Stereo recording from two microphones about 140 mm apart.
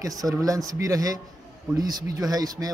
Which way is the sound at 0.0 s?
25° right (ahead or behind).